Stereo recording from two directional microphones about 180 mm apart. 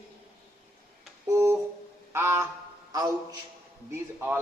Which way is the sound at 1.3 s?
15° right (ahead or behind).